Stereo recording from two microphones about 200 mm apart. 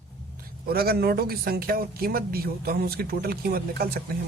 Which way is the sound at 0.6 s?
50° right (ahead or behind).